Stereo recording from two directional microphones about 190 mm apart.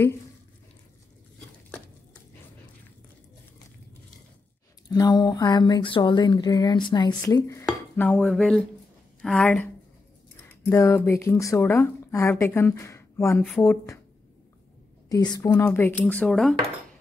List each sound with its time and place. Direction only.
4.8 s speech: 20° left (ahead or behind)
7.6 s dishes: 10° left (ahead or behind)
9.2 s a woman's voice: 5° left (ahead or behind)
15.0 s speech: 20° left (ahead or behind); by 16.5 s centre (ahead or behind)